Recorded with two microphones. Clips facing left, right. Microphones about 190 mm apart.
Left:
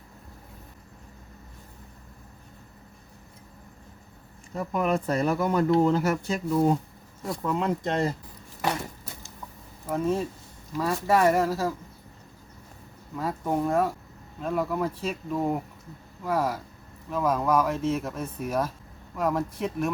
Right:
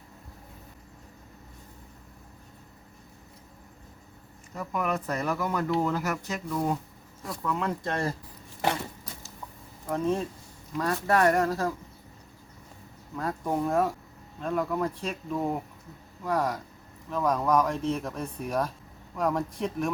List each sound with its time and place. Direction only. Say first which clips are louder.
4.5 s speech: left 4 dB; 25° left (ahead or behind)
9.8 s speech: left 1 dB; 5° left (ahead or behind)
13.1 s speech: left 2 dB; 5° left (ahead or behind)